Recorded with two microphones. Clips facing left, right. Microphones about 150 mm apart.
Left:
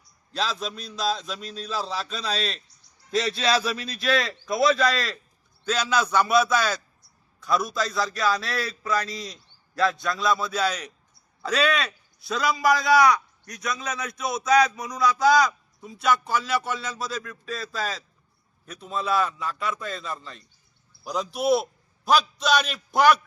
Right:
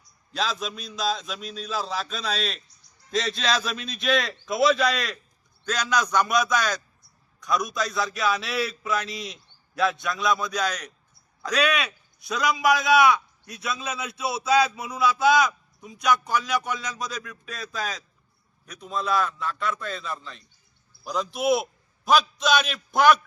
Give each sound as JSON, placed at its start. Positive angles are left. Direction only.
{"t": 0.3, "sound": "a man's voice", "side_deg": 0}
{"t": 3.8, "sound": "a man's voice", "side_deg": -20}
{"t": 4.1, "sound": "a man's voice", "side_deg": 0}
{"t": 9.0, "sound": "a man's voice", "side_deg": -20}
{"t": 9.7, "sound": "a man's voice", "side_deg": 0}
{"t": 22.4, "sound": "a man's voice", "side_deg": 5}